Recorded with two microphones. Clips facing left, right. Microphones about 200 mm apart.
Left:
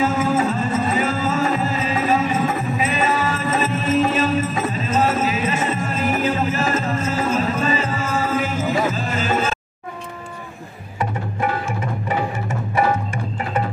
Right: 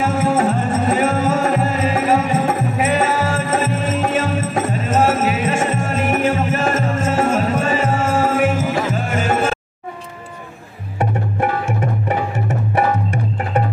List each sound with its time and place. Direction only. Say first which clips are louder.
0.0 s music: right 2 dB; 75° right (ahead or behind)
11.0 s tabla: right 4 dB; 65° right (ahead or behind)